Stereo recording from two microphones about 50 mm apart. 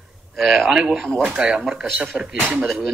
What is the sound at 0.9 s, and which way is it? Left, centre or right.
Speech, centre.